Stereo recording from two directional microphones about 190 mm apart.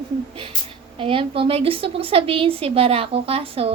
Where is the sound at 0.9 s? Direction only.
30° right (ahead or behind).